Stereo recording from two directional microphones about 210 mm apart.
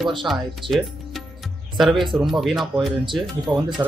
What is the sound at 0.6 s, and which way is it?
Speech, 25° right (ahead or behind).